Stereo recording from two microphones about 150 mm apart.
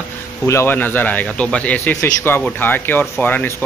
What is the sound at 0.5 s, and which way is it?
A man's voice, 15° left (ahead or behind).